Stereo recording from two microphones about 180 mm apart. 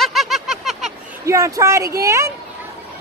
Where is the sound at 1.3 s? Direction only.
15° right (ahead or behind).